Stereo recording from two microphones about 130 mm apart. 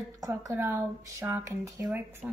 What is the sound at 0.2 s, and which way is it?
Speech, 25° right (ahead or behind).